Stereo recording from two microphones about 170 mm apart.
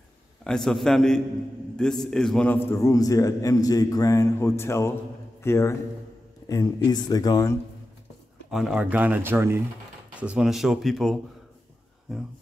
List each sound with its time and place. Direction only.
0.4 s a man's voice: centre (ahead or behind); by 7.5 s 20° left (ahead or behind)
8.5 s speech: centre (ahead or behind)